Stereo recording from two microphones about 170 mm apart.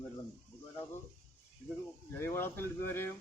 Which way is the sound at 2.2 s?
15° left (ahead or behind).